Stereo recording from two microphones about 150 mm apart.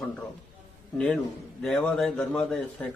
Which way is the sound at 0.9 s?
5° left (ahead or behind).